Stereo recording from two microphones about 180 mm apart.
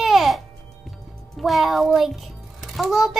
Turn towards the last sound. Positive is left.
turn(degrees=0)  # may be behind; listen again after turning